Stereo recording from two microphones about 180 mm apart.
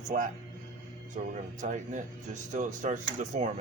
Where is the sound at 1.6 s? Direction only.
45° right (ahead or behind).